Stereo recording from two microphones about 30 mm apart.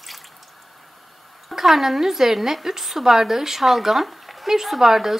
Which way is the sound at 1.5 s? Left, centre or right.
Centre.